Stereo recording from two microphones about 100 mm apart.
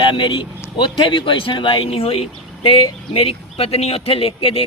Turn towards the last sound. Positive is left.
turn(degrees=70)  # may be behind; listen again after turning